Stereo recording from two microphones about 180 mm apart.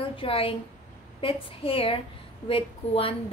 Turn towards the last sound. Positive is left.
turn(degrees=30)  # may be behind; listen again after turning